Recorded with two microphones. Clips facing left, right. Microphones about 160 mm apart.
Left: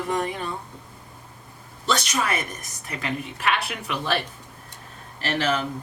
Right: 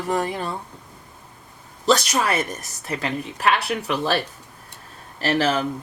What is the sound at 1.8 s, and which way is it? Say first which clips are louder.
Speech: right 5 dB; 35° right (ahead or behind).